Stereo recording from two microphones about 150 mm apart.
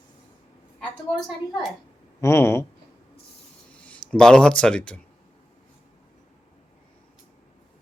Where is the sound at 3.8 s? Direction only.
5° left (ahead or behind).